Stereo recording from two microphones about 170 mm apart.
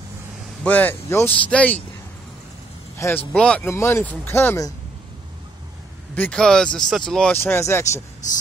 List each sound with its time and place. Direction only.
0.7 s speech: 10° left (ahead or behind)
3.0 s speech: 15° left (ahead or behind)
3.3 s speech: 5° left (ahead or behind)
6.1 s speech: 5° left (ahead or behind)